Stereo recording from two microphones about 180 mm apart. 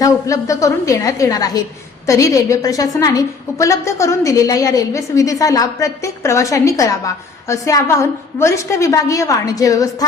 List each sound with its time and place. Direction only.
0.0 s a woman's voice: 15° left (ahead or behind)